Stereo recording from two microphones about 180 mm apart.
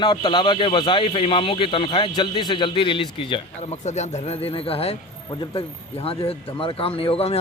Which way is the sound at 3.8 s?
40° left (ahead or behind).